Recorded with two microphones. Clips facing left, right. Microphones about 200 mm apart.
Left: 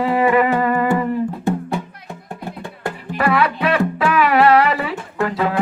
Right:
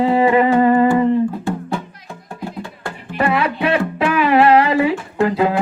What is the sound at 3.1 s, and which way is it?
Music, 30° right (ahead or behind).